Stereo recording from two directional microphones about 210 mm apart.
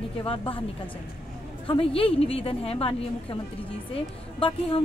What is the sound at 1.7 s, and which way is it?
A woman's voice, 25° left (ahead or behind).